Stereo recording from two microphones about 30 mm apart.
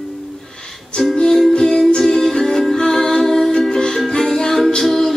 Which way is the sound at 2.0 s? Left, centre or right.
Centre.